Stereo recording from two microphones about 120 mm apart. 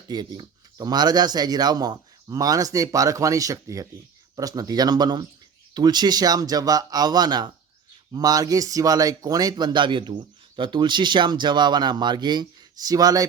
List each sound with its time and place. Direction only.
0.1 s speech: 35° right (ahead or behind)